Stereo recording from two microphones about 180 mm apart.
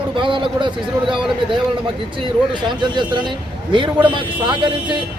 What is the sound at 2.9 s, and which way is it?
Speech, 25° right (ahead or behind).